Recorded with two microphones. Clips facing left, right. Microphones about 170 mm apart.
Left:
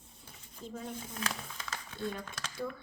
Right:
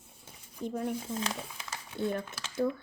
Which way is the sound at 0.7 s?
60° right (ahead or behind).